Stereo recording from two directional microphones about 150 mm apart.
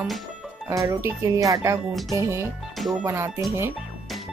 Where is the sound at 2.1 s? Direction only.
20° right (ahead or behind).